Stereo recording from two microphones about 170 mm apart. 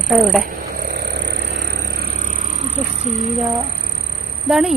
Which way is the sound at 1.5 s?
85° right.